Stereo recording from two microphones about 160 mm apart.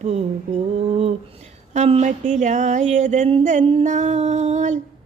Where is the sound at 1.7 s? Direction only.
45° right (ahead or behind).